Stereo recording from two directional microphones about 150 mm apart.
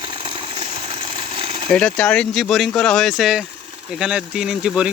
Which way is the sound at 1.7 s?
5° left (ahead or behind).